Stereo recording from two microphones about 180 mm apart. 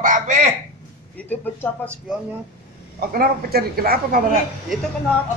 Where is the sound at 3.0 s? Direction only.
55° right (ahead or behind).